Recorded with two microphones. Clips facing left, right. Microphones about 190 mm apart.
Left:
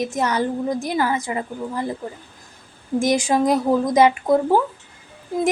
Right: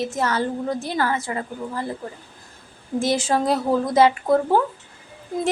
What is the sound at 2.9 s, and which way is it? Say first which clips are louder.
A woman's voice: left 3 dB; 15° left (ahead or behind).